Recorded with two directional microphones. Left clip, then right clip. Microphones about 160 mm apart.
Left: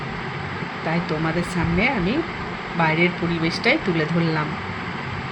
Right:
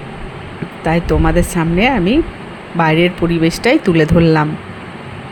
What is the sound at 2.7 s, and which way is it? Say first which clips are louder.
Speech: right 7 dB; 90° right.